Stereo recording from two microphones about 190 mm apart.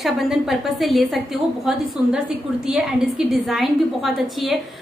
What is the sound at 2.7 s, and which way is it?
A woman's voice, centre (ahead or behind).